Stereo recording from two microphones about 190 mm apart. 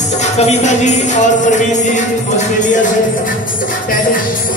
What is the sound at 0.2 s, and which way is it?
Music, 35° left (ahead or behind).